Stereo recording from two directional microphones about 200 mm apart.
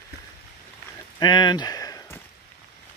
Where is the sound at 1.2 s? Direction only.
20° left (ahead or behind).